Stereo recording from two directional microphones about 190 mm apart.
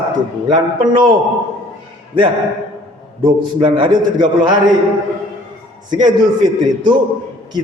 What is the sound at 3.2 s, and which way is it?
A man's voice, 25° right (ahead or behind).